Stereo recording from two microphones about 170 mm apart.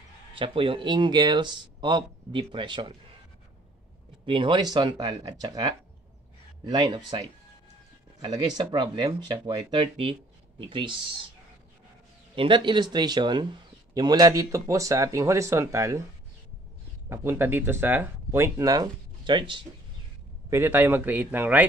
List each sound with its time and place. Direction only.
0.3 s speech: 30° right (ahead or behind)
4.3 s speech: 30° right (ahead or behind)
12.4 s speech: 30° right (ahead or behind)
17.1 s speech: 15° right (ahead or behind)
20.4 s speech: 15° right (ahead or behind)